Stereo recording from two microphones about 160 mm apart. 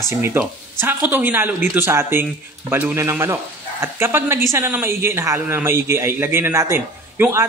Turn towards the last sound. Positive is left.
turn(degrees=-15)  # may be behind; listen again after turning